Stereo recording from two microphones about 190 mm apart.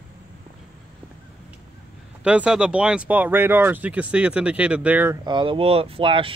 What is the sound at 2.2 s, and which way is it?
Speech, 5° right (ahead or behind).